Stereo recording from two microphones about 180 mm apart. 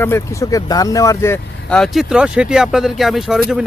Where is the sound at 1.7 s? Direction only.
Centre (ahead or behind).